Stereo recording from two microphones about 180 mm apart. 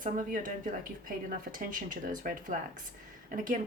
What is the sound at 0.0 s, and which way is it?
Speech, 45° right (ahead or behind).